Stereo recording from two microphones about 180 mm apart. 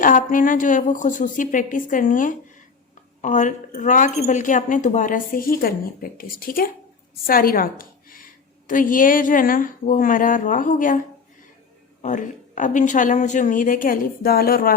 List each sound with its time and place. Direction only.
0.0 s a woman's voice: 45° left (ahead or behind)
12.0 s a woman's voice: 45° left (ahead or behind)